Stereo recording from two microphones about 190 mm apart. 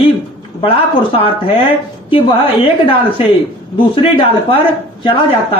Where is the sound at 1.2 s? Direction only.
30° left (ahead or behind).